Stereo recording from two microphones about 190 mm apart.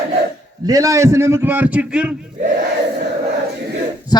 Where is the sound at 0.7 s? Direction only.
15° right (ahead or behind).